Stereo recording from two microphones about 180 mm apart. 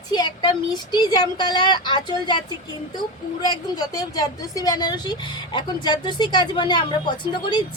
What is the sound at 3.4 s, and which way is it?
A woman's voice, 25° left (ahead or behind).